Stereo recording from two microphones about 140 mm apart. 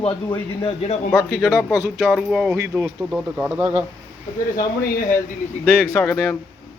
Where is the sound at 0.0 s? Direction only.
40° left (ahead or behind).